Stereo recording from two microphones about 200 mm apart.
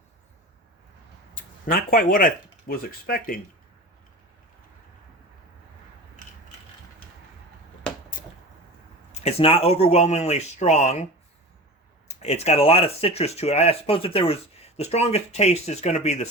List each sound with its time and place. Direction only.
1.4 s speech: 45° left (ahead or behind)
9.2 s speech: 30° left (ahead or behind)
12.0 s speech: 35° left (ahead or behind)